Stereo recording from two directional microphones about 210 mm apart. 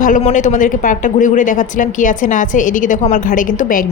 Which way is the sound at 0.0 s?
35° left (ahead or behind).